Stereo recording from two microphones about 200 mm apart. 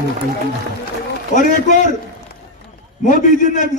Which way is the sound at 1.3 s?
40° left (ahead or behind).